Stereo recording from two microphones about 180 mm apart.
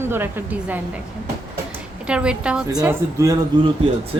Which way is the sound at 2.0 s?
5° right (ahead or behind).